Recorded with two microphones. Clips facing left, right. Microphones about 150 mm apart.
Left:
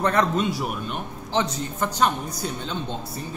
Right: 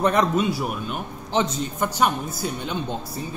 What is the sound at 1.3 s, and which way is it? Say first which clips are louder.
Speech: right 2 dB; 20° right (ahead or behind).